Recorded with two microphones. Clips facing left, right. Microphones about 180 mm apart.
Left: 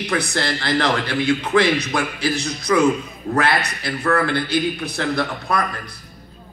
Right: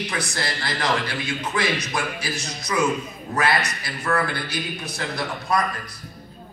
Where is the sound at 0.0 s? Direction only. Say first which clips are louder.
Left 6 dB; 60° left (ahead or behind).